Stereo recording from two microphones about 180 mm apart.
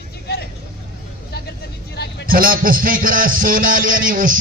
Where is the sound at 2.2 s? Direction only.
55° right (ahead or behind).